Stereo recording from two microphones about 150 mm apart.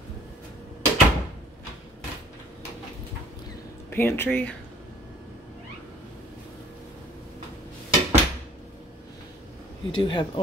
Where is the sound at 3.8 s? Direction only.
15° left (ahead or behind).